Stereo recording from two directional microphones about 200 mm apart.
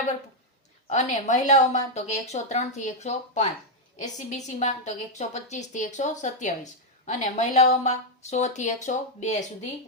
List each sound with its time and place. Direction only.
0.9 s a woman's voice: 35° left (ahead or behind)